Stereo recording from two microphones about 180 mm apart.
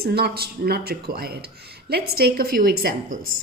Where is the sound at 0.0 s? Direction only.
60° right (ahead or behind).